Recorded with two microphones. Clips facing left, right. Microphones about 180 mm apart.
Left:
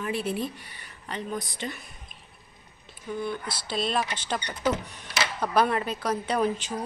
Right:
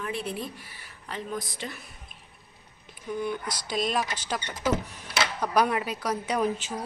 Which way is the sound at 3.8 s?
10° right (ahead or behind).